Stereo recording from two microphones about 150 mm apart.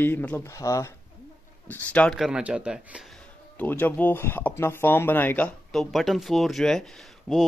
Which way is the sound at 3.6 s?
15° left (ahead or behind).